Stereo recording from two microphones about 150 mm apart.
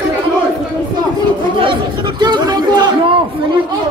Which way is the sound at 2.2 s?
30° right (ahead or behind).